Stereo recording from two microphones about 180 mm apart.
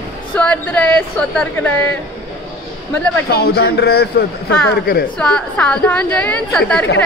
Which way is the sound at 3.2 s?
60° left (ahead or behind).